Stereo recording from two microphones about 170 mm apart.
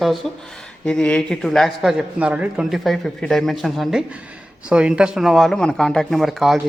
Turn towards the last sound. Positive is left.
turn(degrees=0)  # may be behind; listen again after turning